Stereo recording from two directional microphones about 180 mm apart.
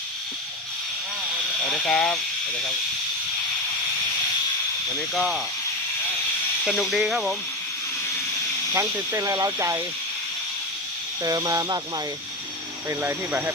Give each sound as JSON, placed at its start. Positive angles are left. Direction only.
{"t": 1.7, "sound": "speech", "side_deg": 5}
{"t": 5.1, "sound": "speech", "side_deg": 0}
{"t": 6.7, "sound": "speech", "side_deg": 0}
{"t": 8.7, "sound": "speech", "side_deg": -15}
{"t": 11.2, "sound": "speech", "side_deg": -20}
{"t": 12.9, "sound": "speech", "side_deg": -10}